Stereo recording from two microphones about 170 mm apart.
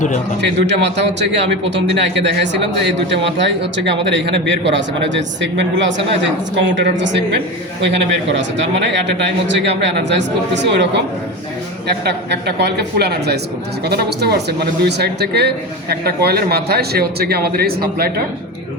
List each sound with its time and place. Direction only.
0.4 s a man's voice: 90° right
11.9 s a man's voice: 75° right (ahead or behind)